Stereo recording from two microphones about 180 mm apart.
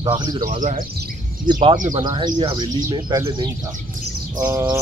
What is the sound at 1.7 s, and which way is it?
Speech, 45° right (ahead or behind).